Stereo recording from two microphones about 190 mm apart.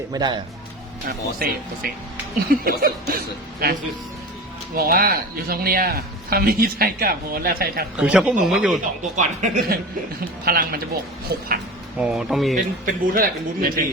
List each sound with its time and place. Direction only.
0.1 s speech: 25° right (ahead or behind)
1.0 s speech: 50° right (ahead or behind)
7.9 s speech: 5° right (ahead or behind)
9.1 s speech: 40° right (ahead or behind)
10.4 s speech: 50° right (ahead or behind)
11.3 s a sound: 55° right (ahead or behind)
11.9 s speech: 5° right (ahead or behind)
12.8 s speech: 50° right (ahead or behind)